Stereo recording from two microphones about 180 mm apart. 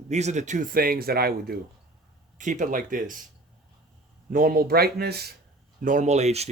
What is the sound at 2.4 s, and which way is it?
Speech, 45° right (ahead or behind).